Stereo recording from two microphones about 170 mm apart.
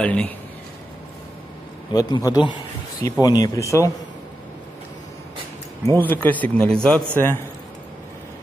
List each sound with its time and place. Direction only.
0.0 s a man's voice: 5° left (ahead or behind)
1.9 s speech: 25° left (ahead or behind)
5.9 s a man's voice: 10° left (ahead or behind)